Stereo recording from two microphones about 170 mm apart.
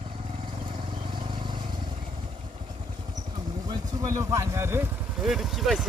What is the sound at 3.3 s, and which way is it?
Vehicle, 25° right (ahead or behind).